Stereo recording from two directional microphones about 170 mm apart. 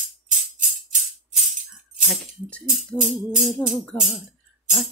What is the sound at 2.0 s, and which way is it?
Music, centre (ahead or behind).